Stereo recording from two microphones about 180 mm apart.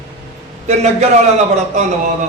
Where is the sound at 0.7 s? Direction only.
40° right (ahead or behind).